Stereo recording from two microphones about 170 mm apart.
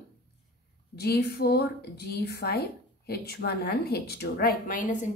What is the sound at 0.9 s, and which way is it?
A woman's voice, 70° left (ahead or behind).